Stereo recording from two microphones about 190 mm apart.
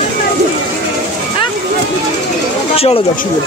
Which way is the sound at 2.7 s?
30° left (ahead or behind).